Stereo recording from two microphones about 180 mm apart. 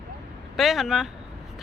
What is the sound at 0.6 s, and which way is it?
Speech, centre (ahead or behind).